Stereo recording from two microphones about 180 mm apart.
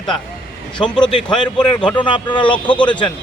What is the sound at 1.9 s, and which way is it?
Speech, 25° left (ahead or behind).